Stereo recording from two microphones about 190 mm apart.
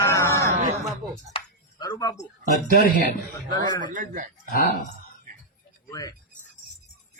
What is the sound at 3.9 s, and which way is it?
Speech, 45° right (ahead or behind).